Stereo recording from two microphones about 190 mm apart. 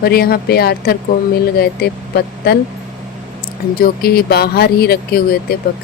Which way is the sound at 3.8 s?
50° left (ahead or behind).